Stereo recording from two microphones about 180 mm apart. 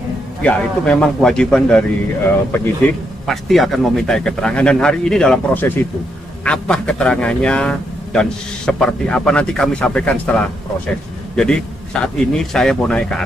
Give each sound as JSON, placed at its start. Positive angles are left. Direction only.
{"t": 0.4, "sound": "speech", "side_deg": 5}
{"t": 3.3, "sound": "speech", "side_deg": 0}